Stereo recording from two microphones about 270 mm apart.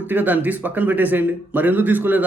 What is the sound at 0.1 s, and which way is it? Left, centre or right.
A man's voice, centre.